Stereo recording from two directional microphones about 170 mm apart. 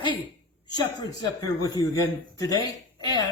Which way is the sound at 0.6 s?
25° left (ahead or behind).